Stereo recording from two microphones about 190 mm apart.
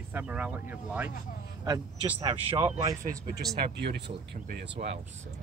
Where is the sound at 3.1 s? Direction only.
50° right (ahead or behind).